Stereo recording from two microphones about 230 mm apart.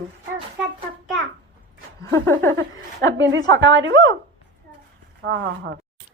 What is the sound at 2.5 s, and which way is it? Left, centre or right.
A woman's voice, right.